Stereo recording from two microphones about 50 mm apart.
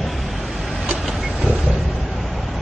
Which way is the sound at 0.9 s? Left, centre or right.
Centre.